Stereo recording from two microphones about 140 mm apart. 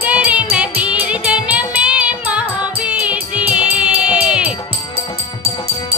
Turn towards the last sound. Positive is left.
turn(degrees=-5)  # may be behind; listen again after turning